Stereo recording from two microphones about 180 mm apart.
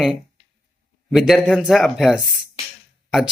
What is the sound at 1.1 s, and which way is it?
Speech, centre (ahead or behind).